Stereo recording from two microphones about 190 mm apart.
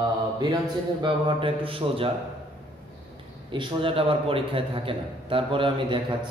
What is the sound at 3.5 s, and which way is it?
A man's voice, 25° right (ahead or behind).